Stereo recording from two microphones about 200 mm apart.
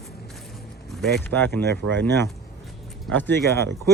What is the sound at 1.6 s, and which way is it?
Speech, 55° right (ahead or behind).